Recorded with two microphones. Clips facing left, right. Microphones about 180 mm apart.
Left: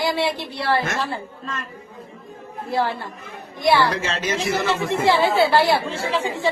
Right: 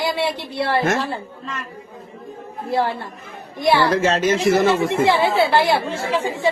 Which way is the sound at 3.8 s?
45° right (ahead or behind).